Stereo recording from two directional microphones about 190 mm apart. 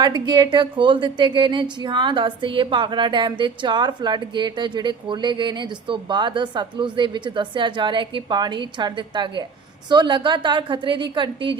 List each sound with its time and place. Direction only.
0.0 s a woman's voice: 25° right (ahead or behind)